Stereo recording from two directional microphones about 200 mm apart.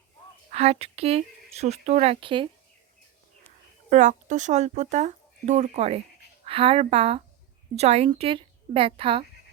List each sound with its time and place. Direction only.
0.5 s speech: 30° right (ahead or behind)
3.8 s a woman's voice: 35° right (ahead or behind)